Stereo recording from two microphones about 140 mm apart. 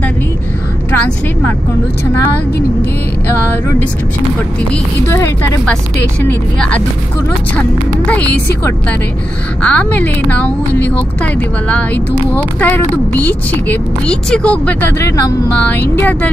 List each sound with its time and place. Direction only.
0.9 s a woman's voice: 10° left (ahead or behind)
5.0 s speech: 20° left (ahead or behind)
6.2 s speech: 10° left (ahead or behind)
8.1 s speech: 10° left (ahead or behind)
9.6 s speech: 10° left (ahead or behind)